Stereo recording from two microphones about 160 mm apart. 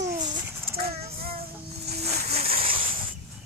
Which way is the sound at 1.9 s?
40° right (ahead or behind).